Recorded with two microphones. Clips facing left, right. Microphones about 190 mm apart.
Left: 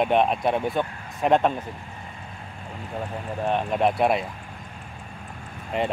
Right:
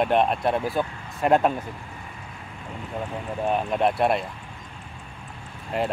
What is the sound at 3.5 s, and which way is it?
Speech, centre (ahead or behind).